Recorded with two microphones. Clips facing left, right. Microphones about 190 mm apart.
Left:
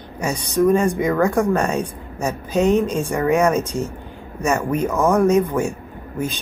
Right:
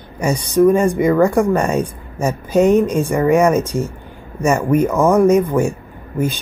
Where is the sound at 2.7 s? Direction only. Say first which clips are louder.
Right 4 dB; 15° right (ahead or behind).